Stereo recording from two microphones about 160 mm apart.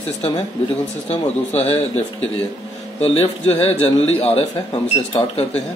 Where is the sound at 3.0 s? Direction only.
35° left (ahead or behind).